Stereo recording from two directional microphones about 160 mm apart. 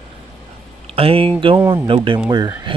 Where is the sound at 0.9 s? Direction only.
35° right (ahead or behind).